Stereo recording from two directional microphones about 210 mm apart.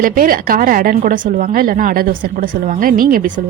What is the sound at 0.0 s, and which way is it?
A woman's voice, 40° right (ahead or behind).